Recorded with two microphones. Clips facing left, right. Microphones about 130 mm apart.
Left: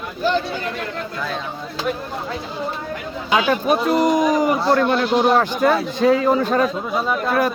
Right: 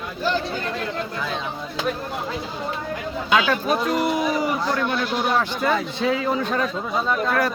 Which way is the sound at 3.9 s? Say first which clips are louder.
Left 5 dB; 40° left (ahead or behind).